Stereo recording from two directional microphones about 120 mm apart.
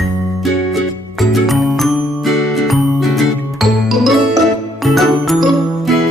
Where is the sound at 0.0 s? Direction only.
Centre (ahead or behind).